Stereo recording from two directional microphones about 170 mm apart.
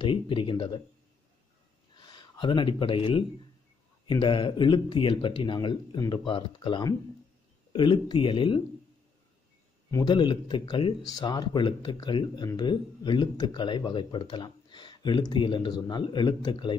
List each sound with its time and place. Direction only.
0.0 s speech: 30° left (ahead or behind)
2.0 s speech: 25° left (ahead or behind)
9.8 s speech: 20° left (ahead or behind)